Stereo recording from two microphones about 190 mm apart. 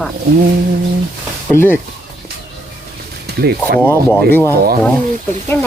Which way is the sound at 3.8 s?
10° left (ahead or behind).